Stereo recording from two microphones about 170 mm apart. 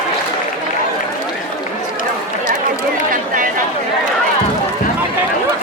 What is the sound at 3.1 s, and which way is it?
Chatter, 50° right (ahead or behind).